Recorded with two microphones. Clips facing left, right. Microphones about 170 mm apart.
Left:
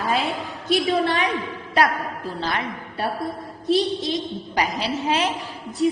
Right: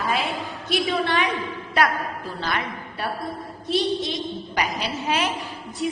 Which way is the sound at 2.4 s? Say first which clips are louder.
Left 1 dB; 30° left (ahead or behind).